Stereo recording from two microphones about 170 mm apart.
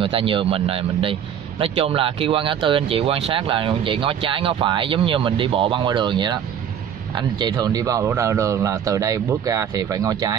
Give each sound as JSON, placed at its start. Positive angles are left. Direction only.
{"t": 0.0, "sound": "speech", "side_deg": -30}